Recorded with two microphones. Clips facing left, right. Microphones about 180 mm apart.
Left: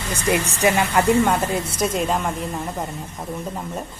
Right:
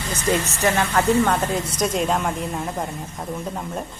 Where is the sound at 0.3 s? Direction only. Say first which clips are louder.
Left 2 dB; 15° left (ahead or behind).